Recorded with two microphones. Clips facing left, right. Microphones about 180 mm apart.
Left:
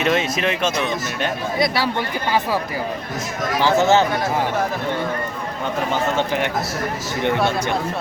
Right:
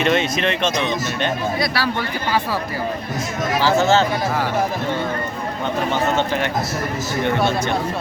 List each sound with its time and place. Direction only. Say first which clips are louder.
0.0 s speech: right 1 dB; 5° left (ahead or behind)
1.5 s speech: left 1 dB; 20° left (ahead or behind)
3.8 s speech: left 2 dB; 20° left (ahead or behind)
5.9 s speech: even; 15° left (ahead or behind)